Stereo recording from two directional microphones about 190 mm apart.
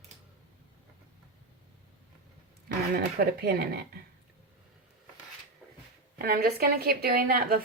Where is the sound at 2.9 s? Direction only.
55° right (ahead or behind).